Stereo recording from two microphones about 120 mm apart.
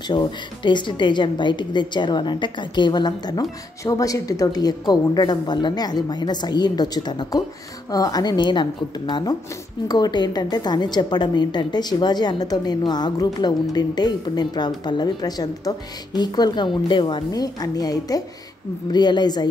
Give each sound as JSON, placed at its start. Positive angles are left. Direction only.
{"t": 0.1, "sound": "a woman's voice", "side_deg": 40}